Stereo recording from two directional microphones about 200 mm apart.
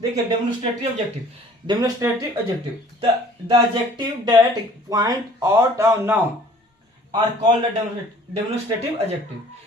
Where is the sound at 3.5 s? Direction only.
20° right (ahead or behind).